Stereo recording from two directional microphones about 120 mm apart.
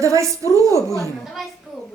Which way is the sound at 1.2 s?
Centre (ahead or behind).